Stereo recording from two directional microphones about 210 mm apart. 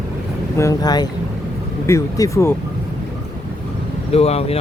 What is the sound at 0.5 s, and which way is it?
Speech, 15° left (ahead or behind).